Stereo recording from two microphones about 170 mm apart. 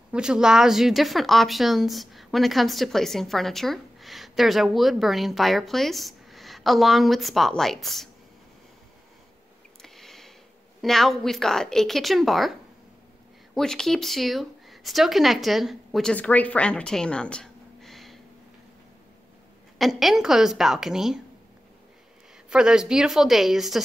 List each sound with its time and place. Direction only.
0.1 s speech: 5° right (ahead or behind)
9.8 s a sound: centre (ahead or behind)
10.8 s speech: centre (ahead or behind)
13.6 s a woman's voice: 5° left (ahead or behind)
19.8 s speech: centre (ahead or behind)
22.5 s speech: 5° right (ahead or behind)